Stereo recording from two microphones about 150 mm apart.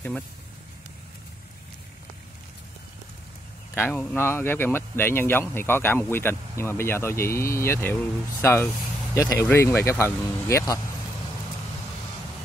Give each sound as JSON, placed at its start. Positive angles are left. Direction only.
{"t": 3.7, "sound": "speech", "side_deg": 10}